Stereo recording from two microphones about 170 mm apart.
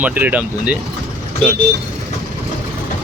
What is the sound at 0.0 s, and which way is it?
Speech, 10° right (ahead or behind).